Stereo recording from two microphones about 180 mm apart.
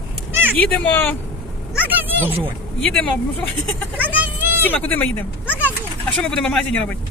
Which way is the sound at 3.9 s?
10° right (ahead or behind).